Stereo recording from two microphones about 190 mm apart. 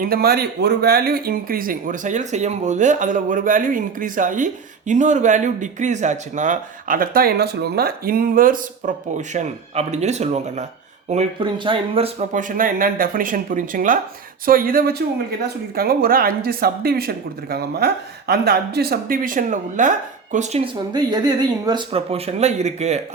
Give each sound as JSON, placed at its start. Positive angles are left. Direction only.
{"t": 0.0, "sound": "speech", "side_deg": -55}
{"t": 20.9, "sound": "speech", "side_deg": -20}